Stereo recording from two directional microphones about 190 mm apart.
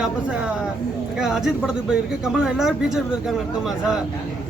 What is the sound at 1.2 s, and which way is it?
Speech, 5° right (ahead or behind).